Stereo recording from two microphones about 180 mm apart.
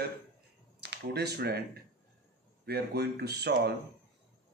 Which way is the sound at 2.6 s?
65° right (ahead or behind).